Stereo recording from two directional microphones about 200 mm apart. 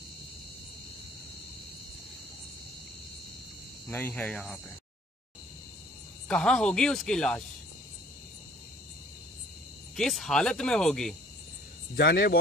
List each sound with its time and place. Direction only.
3.8 s speech: 10° left (ahead or behind)
6.2 s speech: 5° left (ahead or behind)
9.9 s speech: centre (ahead or behind)
11.9 s speech: 50° left (ahead or behind)